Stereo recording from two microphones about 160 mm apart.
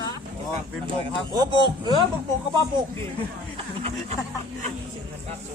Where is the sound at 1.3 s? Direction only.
25° right (ahead or behind).